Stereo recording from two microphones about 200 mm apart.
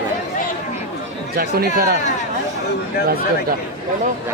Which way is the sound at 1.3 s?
50° right (ahead or behind).